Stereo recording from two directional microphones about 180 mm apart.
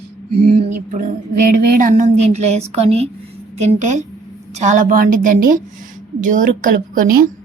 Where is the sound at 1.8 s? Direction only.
40° right (ahead or behind).